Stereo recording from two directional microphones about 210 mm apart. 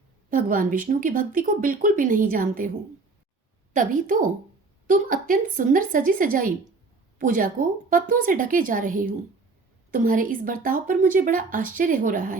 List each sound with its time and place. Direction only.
0.3 s a woman's voice: 40° right (ahead or behind)
3.7 s a woman's voice: 40° right (ahead or behind)